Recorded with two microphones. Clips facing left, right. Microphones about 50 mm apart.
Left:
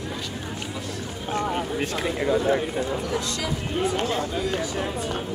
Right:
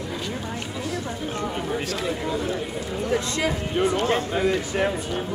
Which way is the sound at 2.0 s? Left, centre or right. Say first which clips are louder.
Left 7 dB; left.